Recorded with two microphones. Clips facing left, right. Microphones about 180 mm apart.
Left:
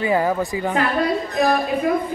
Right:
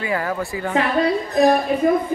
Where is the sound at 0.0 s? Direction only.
20° left (ahead or behind).